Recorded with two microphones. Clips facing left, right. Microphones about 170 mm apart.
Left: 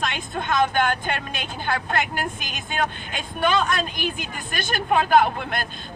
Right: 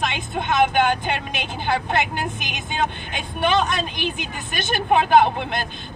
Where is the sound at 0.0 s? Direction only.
15° right (ahead or behind).